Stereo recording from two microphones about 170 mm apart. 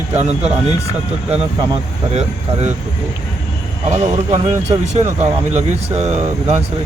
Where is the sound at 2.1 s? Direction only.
45° right (ahead or behind).